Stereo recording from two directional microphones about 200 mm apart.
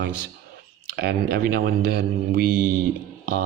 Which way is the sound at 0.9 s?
50° right (ahead or behind).